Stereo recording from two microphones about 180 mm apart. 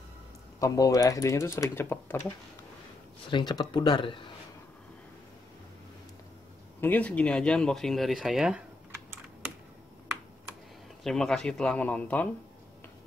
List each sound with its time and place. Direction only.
0.6 s speech: 20° left (ahead or behind)
3.3 s speech: 25° left (ahead or behind)
6.8 s speech: 10° left (ahead or behind)
11.1 s speech: 5° left (ahead or behind)